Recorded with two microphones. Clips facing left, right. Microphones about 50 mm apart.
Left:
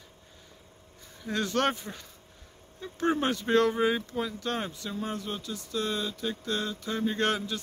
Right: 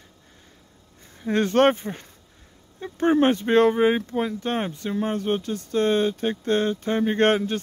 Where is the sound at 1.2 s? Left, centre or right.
Right.